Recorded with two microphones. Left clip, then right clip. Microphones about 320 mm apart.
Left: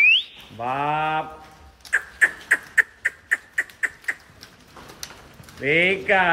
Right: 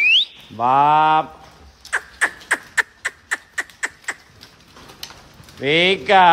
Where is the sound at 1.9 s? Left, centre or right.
Centre.